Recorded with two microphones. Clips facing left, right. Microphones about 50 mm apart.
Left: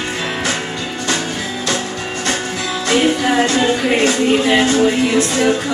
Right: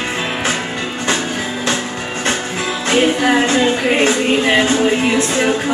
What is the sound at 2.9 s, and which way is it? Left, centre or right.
Music, right.